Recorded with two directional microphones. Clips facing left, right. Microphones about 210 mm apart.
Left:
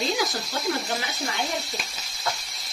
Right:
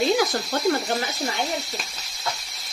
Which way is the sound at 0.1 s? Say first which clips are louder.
Right 6 dB; 55° right (ahead or behind).